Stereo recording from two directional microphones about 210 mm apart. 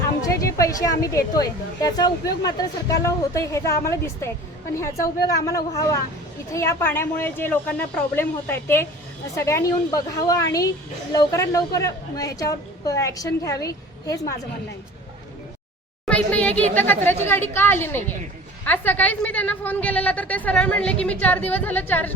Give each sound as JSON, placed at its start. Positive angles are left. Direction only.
{"t": 0.2, "sound": "a woman's voice", "side_deg": 15}
{"t": 16.0, "sound": "a woman's voice", "side_deg": 5}